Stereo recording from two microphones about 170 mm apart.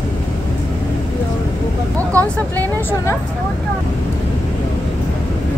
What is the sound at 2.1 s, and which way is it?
Vehicle, 10° left (ahead or behind).